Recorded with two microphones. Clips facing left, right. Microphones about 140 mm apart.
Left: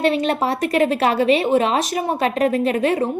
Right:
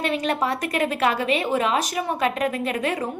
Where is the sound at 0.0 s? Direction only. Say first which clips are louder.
Left 5 dB; 30° left (ahead or behind).